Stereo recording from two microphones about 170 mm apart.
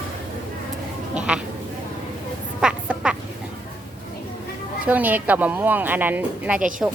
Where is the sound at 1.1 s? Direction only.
5° right (ahead or behind).